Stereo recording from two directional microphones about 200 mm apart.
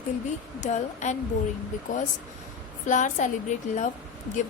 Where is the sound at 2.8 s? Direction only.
40° left (ahead or behind).